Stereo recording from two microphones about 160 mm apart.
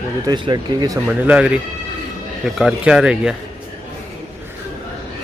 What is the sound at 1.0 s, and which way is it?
Speech, 10° right (ahead or behind).